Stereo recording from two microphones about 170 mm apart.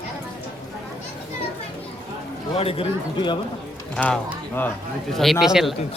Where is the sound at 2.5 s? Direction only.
35° left (ahead or behind).